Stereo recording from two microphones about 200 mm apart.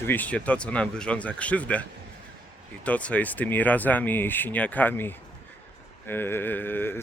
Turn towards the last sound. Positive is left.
turn(degrees=10)  # may be behind; listen again after turning